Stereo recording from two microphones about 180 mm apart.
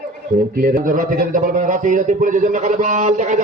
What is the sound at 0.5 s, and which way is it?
A man's voice, 50° right (ahead or behind).